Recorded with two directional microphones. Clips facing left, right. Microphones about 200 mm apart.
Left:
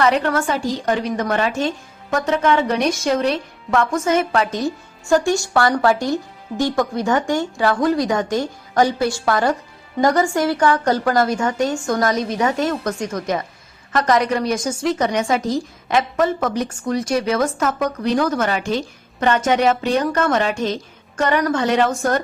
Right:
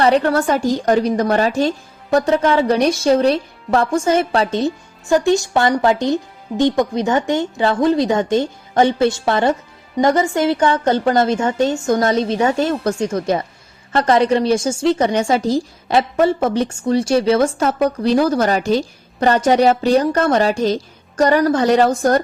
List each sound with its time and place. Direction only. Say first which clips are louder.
0.0 s a woman's voice: right 3 dB; 35° right (ahead or behind)